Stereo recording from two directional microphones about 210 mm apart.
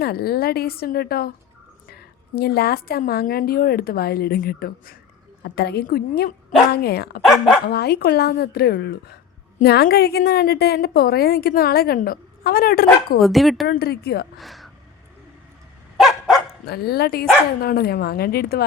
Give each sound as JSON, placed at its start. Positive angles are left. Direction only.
{"t": 0.0, "sound": "a woman's voice", "side_deg": 50}
{"t": 13.1, "sound": "speech", "side_deg": 0}
{"t": 13.7, "sound": "a woman's voice", "side_deg": 45}
{"t": 14.3, "sound": "speech", "side_deg": 0}
{"t": 16.0, "sound": "dog", "side_deg": 0}
{"t": 16.6, "sound": "a woman's voice", "side_deg": 50}